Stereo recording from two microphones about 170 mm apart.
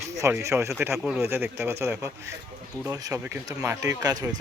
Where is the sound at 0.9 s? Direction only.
5° right (ahead or behind).